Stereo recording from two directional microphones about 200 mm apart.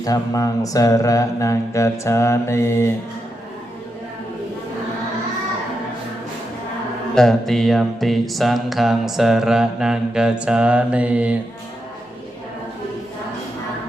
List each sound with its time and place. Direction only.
0.0 s mantra: 15° left (ahead or behind)
7.2 s mantra: centre (ahead or behind)